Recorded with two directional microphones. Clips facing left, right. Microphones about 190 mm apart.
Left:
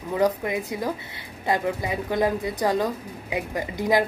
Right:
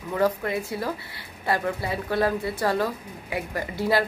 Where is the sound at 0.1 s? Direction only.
15° left (ahead or behind).